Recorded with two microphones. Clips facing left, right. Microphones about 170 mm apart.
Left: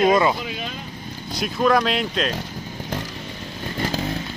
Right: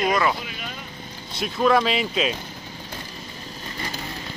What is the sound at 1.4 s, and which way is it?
Speech, centre (ahead or behind).